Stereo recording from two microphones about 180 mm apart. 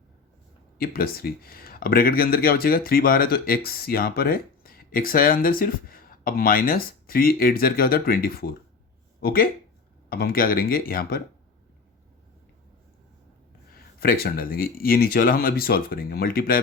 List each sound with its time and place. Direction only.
0.8 s speech: 55° left (ahead or behind)
13.7 s speech: 55° left (ahead or behind)